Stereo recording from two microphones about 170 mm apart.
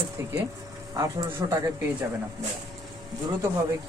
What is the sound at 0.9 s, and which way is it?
Speech, 15° right (ahead or behind).